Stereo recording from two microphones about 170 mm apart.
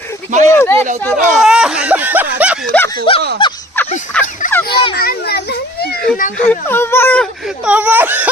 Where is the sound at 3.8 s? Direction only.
15° left (ahead or behind).